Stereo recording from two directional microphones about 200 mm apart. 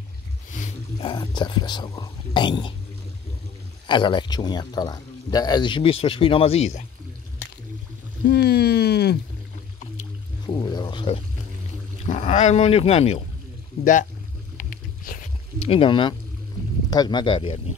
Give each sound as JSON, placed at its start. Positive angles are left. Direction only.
{"t": 1.0, "sound": "speech", "side_deg": 25}
{"t": 3.8, "sound": "speech", "side_deg": 25}
{"t": 8.3, "sound": "speech", "side_deg": 55}
{"t": 10.4, "sound": "speech", "side_deg": 20}
{"t": 12.1, "sound": "speech", "side_deg": 35}
{"t": 14.6, "sound": "a sound", "side_deg": 40}
{"t": 15.7, "sound": "speech", "side_deg": 25}